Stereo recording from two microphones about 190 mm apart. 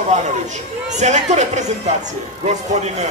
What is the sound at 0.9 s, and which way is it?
A man's voice, 40° right (ahead or behind).